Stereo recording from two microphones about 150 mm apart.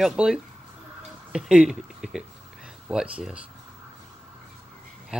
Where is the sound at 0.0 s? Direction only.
5° right (ahead or behind).